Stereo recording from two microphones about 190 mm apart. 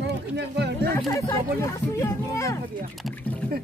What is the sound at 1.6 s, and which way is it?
Speech, 15° left (ahead or behind).